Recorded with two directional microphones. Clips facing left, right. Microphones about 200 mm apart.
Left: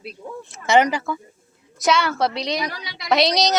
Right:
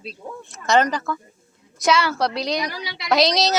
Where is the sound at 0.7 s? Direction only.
10° left (ahead or behind).